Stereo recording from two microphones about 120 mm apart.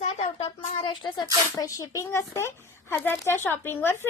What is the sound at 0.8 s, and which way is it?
Speech, 40° left (ahead or behind).